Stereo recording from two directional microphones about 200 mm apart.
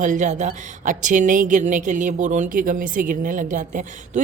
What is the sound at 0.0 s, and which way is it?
A woman's voice, 40° right (ahead or behind).